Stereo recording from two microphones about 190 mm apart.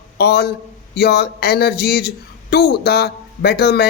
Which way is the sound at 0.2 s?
55° left (ahead or behind).